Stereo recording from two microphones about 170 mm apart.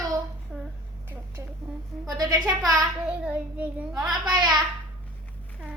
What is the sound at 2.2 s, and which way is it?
Speech, 25° right (ahead or behind).